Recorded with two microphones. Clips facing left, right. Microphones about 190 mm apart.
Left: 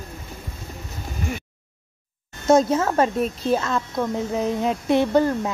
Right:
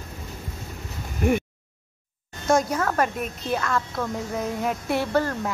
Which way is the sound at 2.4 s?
25° left (ahead or behind).